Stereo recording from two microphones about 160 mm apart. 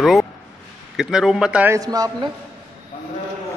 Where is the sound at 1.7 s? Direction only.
20° right (ahead or behind).